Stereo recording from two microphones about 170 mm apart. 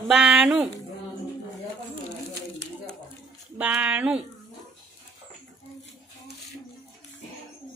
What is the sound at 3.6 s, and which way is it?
Speech, 10° right (ahead or behind).